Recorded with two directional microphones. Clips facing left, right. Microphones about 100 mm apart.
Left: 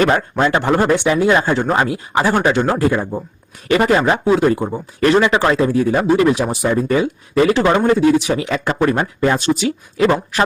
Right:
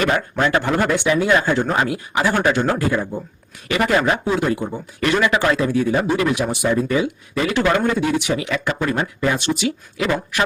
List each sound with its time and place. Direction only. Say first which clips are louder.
0.0 s speech: left 4 dB; 35° left (ahead or behind)
7.5 s speech: even; 25° left (ahead or behind)